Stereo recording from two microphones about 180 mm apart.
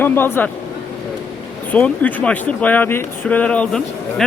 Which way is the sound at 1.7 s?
10° left (ahead or behind).